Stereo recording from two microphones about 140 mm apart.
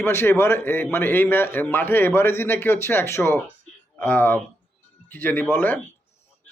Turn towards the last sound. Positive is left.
turn(degrees=15)  # may be behind; listen again after turning